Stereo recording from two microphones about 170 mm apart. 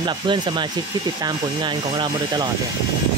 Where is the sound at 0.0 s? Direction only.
25° right (ahead or behind).